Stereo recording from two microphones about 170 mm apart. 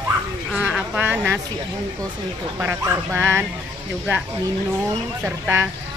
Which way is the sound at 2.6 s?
10° right (ahead or behind).